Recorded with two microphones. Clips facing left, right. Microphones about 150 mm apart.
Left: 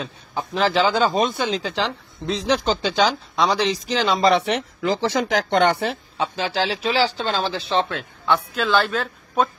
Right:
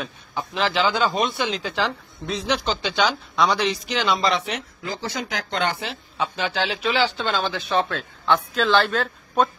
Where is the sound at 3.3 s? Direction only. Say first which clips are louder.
Even; 25° left (ahead or behind).